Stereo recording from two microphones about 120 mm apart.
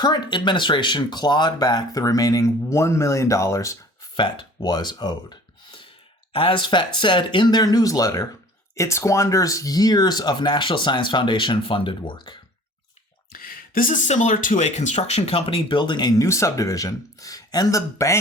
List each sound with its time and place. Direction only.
0.0 s speech: 40° left (ahead or behind)
4.2 s speech: 40° left (ahead or behind)
7.6 s speech: 30° left (ahead or behind)
13.9 s speech: 90° left; by 18.2 s 25° left (ahead or behind)